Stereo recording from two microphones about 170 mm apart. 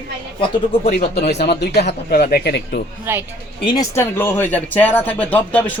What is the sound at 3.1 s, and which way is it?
Speech, 15° right (ahead or behind).